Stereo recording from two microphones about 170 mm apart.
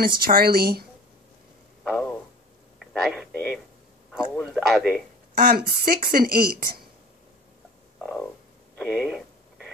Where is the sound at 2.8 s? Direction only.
Centre (ahead or behind).